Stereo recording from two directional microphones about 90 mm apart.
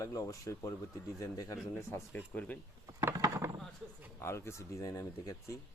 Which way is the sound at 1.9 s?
30° left (ahead or behind).